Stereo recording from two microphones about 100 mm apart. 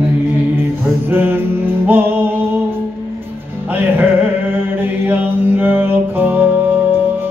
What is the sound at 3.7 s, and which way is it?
Music, 20° right (ahead or behind).